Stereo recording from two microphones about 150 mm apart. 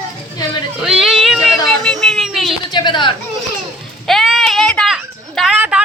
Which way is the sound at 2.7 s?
30° left (ahead or behind).